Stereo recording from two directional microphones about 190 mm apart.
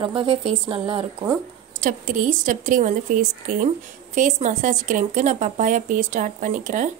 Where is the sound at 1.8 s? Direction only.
45° right (ahead or behind).